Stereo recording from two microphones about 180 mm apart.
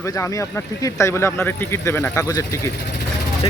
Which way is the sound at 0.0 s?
15° left (ahead or behind).